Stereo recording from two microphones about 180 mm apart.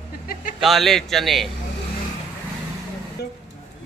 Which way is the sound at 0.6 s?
Centre (ahead or behind).